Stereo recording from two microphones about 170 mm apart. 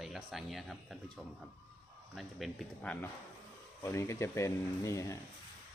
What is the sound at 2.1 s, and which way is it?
Speech, centre (ahead or behind).